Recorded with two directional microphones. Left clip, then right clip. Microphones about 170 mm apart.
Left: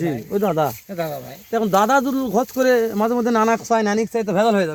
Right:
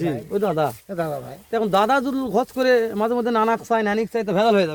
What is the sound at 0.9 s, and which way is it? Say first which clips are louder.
Speech: even; 5° right (ahead or behind).